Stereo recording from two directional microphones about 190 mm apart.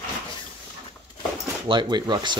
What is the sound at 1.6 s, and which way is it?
Speech, 25° right (ahead or behind).